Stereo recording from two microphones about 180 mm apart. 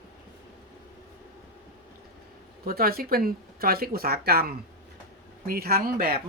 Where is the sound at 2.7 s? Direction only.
55° right (ahead or behind).